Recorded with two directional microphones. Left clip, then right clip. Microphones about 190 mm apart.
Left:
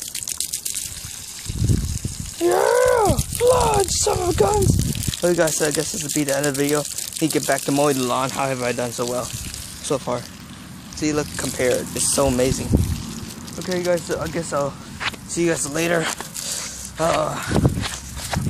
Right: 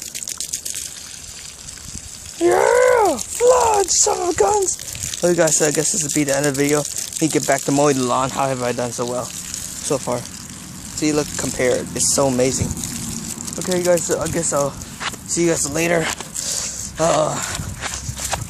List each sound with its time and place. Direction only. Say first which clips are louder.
2.4 s grunt: right 3 dB; 15° right (ahead or behind)
3.4 s a sound: right 3 dB; 15° right (ahead or behind)
3.7 s speech: right 3 dB; centre (ahead or behind)
5.9 s speech: right 3 dB; centre (ahead or behind)
13.7 s speech: right 4 dB; 20° right (ahead or behind)
14.6 s a sound: right 2 dB; 10° right (ahead or behind)
17.2 s speech: right 3 dB; 15° right (ahead or behind)